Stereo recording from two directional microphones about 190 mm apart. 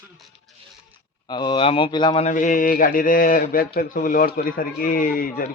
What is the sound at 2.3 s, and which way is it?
Speech, 45° left (ahead or behind).